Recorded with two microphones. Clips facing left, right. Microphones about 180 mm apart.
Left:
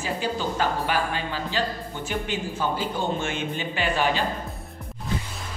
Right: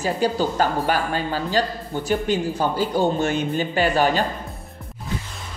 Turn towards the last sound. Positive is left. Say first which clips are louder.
# right 5 dB
turn(degrees=-40)  # may be behind; listen again after turning